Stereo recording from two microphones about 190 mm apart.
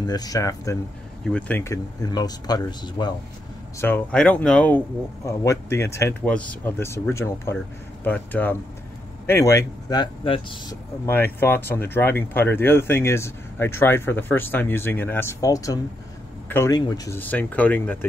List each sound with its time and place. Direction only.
0.0 s speech: 20° left (ahead or behind)
1.2 s speech: 5° left (ahead or behind)
3.8 s speech: 10° left (ahead or behind); by 10.8 s 25° left (ahead or behind)
11.1 s speech: 10° left (ahead or behind)